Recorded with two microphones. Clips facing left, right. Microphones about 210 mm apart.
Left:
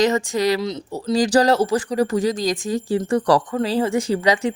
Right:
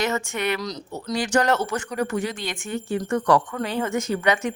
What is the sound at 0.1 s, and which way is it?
Speech, 35° left (ahead or behind).